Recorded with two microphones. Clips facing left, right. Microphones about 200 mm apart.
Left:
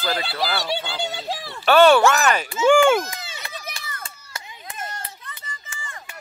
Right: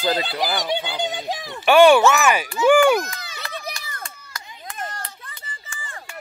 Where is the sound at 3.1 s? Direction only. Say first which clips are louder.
Left 1 dB; 25° left (ahead or behind).